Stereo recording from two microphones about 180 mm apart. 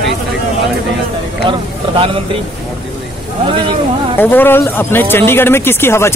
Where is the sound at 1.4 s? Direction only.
25° right (ahead or behind).